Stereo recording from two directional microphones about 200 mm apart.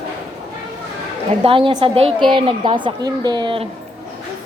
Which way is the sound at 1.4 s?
25° right (ahead or behind).